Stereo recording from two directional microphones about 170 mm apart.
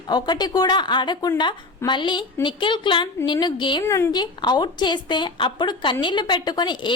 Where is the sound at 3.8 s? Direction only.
15° left (ahead or behind).